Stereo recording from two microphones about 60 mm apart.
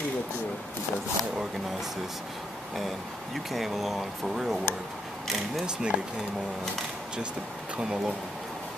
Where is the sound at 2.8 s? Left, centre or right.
Centre.